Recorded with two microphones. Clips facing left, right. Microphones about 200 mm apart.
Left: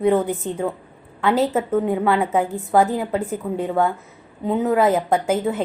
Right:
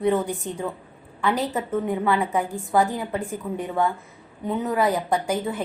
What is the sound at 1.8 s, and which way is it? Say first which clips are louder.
A woman's voice: left 4 dB; 20° left (ahead or behind).